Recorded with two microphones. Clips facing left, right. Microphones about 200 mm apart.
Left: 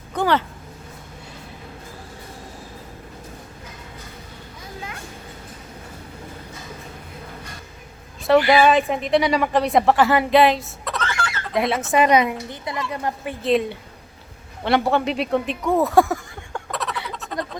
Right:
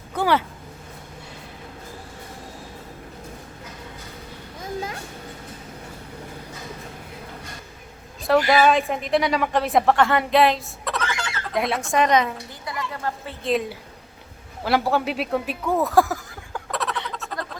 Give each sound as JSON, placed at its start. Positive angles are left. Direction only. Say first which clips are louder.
{"t": 0.1, "sound": "vehicle", "louder": "left 1 dB", "side_deg": -10}
{"t": 8.3, "sound": "a woman's voice", "louder": "left 2 dB", "side_deg": 0}
{"t": 11.0, "sound": "bird", "louder": "left 5 dB", "side_deg": -15}
{"t": 11.5, "sound": "a woman's voice", "louder": "left 3 dB", "side_deg": 0}
{"t": 12.5, "sound": "a woman's voice", "louder": "left 4 dB", "side_deg": 20}
{"t": 13.4, "sound": "a woman's voice", "louder": "left 4 dB", "side_deg": 0}
{"t": 14.6, "sound": "a sound", "louder": "left 2 dB", "side_deg": -5}